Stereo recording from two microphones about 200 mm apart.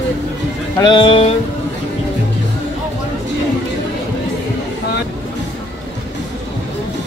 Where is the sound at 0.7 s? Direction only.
25° left (ahead or behind).